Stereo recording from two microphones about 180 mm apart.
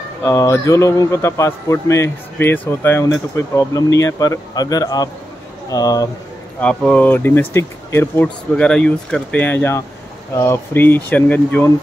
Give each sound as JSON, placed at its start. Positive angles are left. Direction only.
{"t": 0.2, "sound": "a man's voice", "side_deg": 15}
{"t": 6.6, "sound": "a man's voice", "side_deg": 5}